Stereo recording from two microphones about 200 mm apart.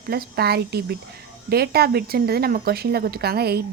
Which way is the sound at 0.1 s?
50° right (ahead or behind).